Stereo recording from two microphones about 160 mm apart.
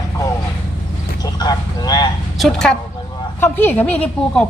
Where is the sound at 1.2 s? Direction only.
25° left (ahead or behind).